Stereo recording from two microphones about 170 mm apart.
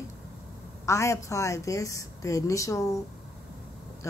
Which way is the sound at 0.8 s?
15° left (ahead or behind).